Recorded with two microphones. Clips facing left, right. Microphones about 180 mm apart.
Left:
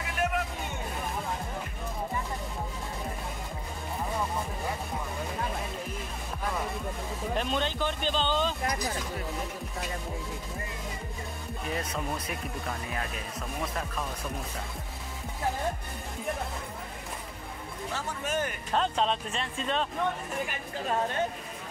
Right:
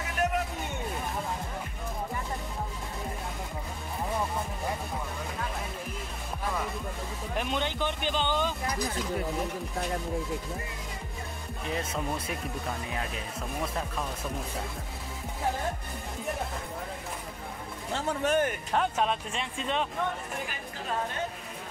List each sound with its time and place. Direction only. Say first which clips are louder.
7.3 s speech: even; 15° right (ahead or behind)
18.2 s speech: right 5 dB; 60° right (ahead or behind)
18.7 s speech: even; 10° right (ahead or behind)